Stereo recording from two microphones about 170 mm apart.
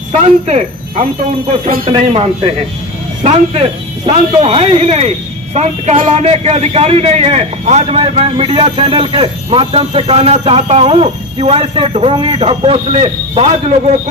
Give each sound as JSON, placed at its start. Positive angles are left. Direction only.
{"t": 0.1, "sound": "a man's voice", "side_deg": -40}